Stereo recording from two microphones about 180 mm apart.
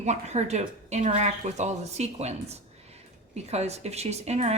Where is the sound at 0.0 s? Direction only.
40° right (ahead or behind).